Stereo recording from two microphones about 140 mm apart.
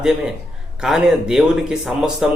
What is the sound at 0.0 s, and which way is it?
Speech, 5° right (ahead or behind).